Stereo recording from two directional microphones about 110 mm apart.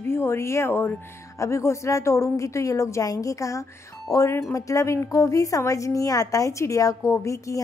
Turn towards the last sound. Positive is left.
turn(degrees=30)  # may be behind; listen again after turning